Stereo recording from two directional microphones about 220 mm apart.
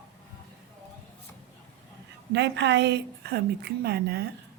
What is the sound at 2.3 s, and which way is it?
A woman's voice, 50° right (ahead or behind).